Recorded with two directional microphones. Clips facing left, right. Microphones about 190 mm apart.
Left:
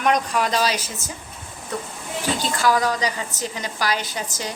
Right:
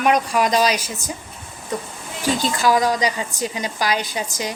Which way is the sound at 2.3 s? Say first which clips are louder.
Right 2 dB; 15° right (ahead or behind).